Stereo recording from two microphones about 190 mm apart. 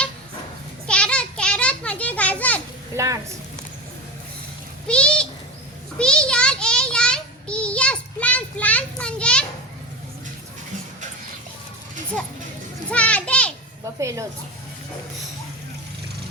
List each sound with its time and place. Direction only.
0.9 s children playing: 5° left (ahead or behind)
2.9 s a woman's voice: 15° right (ahead or behind)
4.9 s a sound: 5° left (ahead or behind)
6.0 s child singing: 5° left (ahead or behind)
12.9 s children playing: 5° left (ahead or behind)
14.0 s a woman's voice: 15° right (ahead or behind)